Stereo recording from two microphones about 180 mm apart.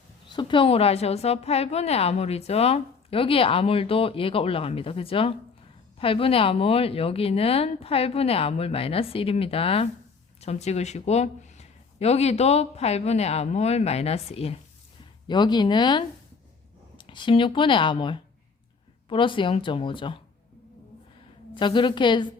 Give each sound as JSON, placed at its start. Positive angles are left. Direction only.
{"t": 0.3, "sound": "a woman's voice", "side_deg": 25}
{"t": 21.5, "sound": "speech", "side_deg": 25}